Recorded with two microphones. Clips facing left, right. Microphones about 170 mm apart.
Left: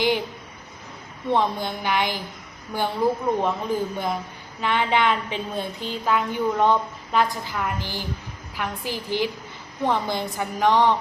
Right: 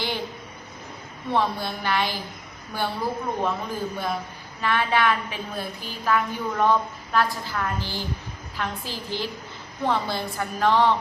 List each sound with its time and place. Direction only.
1.3 s a woman's voice: 15° left (ahead or behind)